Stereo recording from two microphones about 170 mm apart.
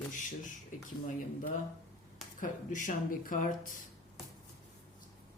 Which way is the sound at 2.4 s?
50° left (ahead or behind).